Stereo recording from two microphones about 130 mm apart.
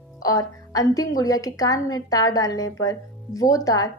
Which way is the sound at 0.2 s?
30° left (ahead or behind).